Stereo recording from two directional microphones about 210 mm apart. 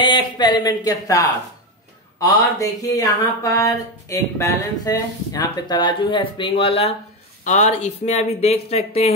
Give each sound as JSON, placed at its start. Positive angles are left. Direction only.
{"t": 0.0, "sound": "speech", "side_deg": 20}